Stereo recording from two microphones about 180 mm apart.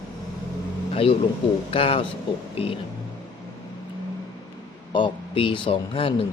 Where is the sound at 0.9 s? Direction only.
30° left (ahead or behind).